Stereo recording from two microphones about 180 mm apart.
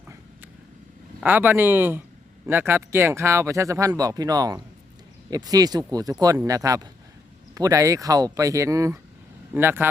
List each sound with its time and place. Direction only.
1.2 s speech: 10° right (ahead or behind)